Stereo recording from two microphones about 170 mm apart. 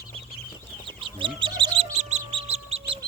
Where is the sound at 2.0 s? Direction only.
40° right (ahead or behind).